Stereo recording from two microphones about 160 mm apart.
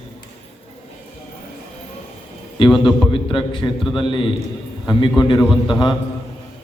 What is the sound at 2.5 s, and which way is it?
A man's voice, 30° left (ahead or behind).